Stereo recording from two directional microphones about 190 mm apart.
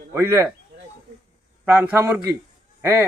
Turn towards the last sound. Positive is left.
turn(degrees=-10)  # may be behind; listen again after turning